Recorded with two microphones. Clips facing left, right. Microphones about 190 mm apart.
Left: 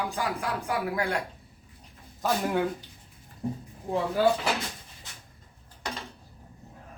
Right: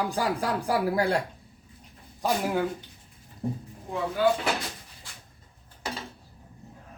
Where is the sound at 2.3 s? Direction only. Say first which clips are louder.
Even; 5° right (ahead or behind).